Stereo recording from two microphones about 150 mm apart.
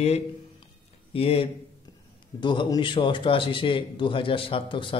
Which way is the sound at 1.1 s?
40° left (ahead or behind).